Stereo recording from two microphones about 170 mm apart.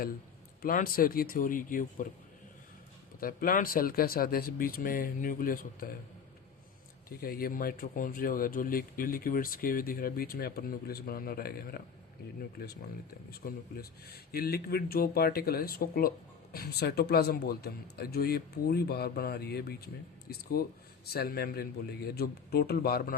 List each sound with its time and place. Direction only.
0.6 s speech: 55° left (ahead or behind)
3.2 s speech: 55° left (ahead or behind)
7.2 s a man's voice: 60° left (ahead or behind)